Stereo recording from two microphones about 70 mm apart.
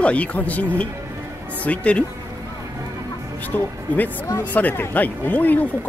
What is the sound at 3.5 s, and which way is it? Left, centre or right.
Speech, left.